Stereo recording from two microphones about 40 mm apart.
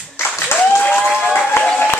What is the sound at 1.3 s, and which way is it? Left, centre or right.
Music, left.